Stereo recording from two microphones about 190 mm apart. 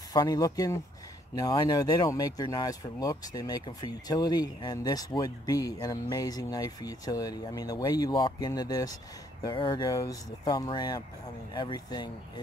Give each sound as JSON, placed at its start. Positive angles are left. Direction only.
{"t": 0.1, "sound": "speech", "side_deg": 20}